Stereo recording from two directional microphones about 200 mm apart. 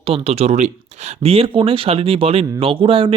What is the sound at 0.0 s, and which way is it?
Speech, 30° right (ahead or behind).